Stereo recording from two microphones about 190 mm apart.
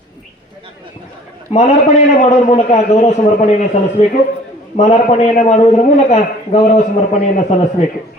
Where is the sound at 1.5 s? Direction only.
30° left (ahead or behind).